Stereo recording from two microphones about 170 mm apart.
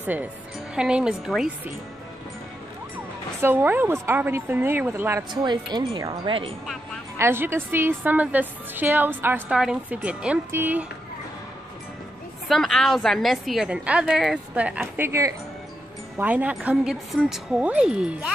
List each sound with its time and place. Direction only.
0.0 s a woman's voice: 10° right (ahead or behind)
3.3 s a woman's voice: 10° right (ahead or behind)
5.3 s speech: 25° right (ahead or behind)
7.2 s a woman's voice: 15° right (ahead or behind)
12.4 s a woman's voice: centre (ahead or behind)